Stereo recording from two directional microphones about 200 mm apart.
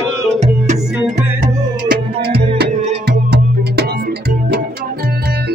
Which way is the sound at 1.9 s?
55° right (ahead or behind).